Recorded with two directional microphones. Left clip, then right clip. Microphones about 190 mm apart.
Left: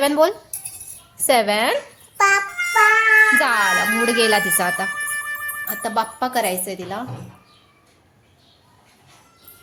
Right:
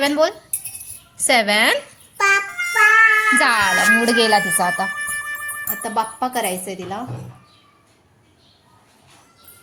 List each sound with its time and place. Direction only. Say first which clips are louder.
0.0 s speech: left 1 dB; 20° left (ahead or behind)
1.1 s music: right 1 dB; 15° left (ahead or behind)
3.3 s speech: right 1 dB; 5° left (ahead or behind)